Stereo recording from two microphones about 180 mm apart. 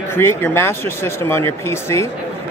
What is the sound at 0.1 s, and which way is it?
Speech, 10° left (ahead or behind).